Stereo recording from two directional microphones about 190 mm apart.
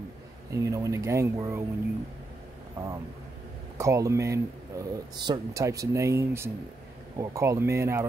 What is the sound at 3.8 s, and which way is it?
Speech, 15° right (ahead or behind).